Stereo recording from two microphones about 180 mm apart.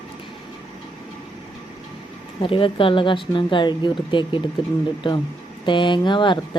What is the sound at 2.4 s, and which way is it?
Speech, 30° left (ahead or behind).